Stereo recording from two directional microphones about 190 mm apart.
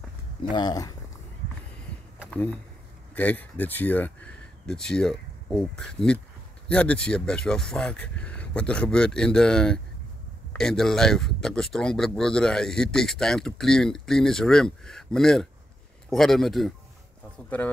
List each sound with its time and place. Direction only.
0.5 s speech: 20° left (ahead or behind)
2.3 s a man's voice: 5° left (ahead or behind)